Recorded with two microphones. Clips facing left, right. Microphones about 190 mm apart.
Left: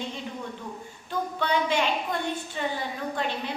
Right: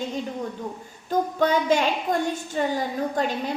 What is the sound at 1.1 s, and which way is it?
A woman's voice, 45° right (ahead or behind).